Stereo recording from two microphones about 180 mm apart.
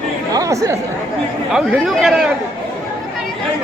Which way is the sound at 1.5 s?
Centre (ahead or behind).